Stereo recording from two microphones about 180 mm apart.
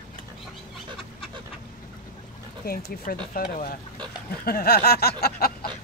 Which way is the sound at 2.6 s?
55° left (ahead or behind).